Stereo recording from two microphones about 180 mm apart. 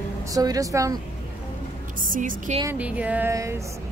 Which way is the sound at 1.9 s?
50° right (ahead or behind).